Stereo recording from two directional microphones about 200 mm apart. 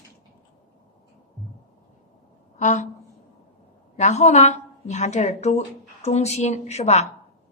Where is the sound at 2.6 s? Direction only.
35° left (ahead or behind).